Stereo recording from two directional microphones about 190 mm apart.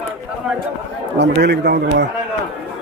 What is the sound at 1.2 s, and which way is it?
Speech, 65° right (ahead or behind).